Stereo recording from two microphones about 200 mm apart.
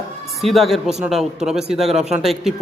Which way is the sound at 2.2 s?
Centre (ahead or behind).